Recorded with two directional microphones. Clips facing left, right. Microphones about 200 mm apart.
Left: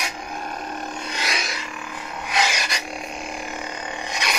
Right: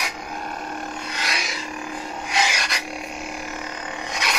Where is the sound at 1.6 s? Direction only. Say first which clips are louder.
Right 3 dB; 40° right (ahead or behind).